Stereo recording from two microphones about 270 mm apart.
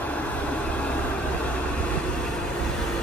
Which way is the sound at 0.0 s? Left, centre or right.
Centre.